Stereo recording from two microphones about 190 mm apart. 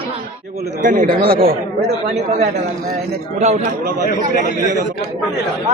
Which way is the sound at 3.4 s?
35° right (ahead or behind).